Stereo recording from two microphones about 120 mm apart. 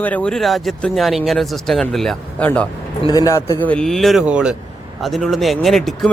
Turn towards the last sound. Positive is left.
turn(degrees=0)  # may be behind; listen again after turning